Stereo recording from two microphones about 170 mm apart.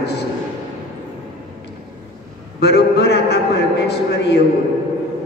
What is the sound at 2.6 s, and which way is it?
A man's voice, 80° left.